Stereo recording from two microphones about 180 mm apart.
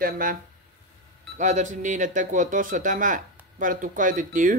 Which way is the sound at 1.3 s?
40° right (ahead or behind).